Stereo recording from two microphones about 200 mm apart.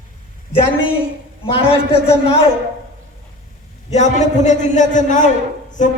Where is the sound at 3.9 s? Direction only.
35° left (ahead or behind).